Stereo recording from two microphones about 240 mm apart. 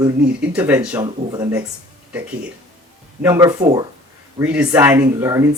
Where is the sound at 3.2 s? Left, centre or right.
Centre.